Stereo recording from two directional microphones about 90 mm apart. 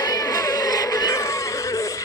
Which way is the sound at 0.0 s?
40° left (ahead or behind).